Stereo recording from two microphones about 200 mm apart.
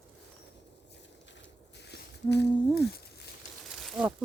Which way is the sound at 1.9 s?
55° left (ahead or behind).